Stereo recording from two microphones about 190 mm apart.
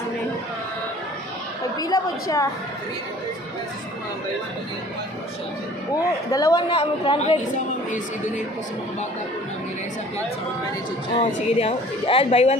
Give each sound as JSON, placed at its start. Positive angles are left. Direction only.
{"t": 1.8, "sound": "a woman's voice", "side_deg": 20}
{"t": 6.3, "sound": "a man's voice", "side_deg": 20}
{"t": 6.7, "sound": "a woman's voice", "side_deg": 30}
{"t": 11.2, "sound": "a woman's voice", "side_deg": 35}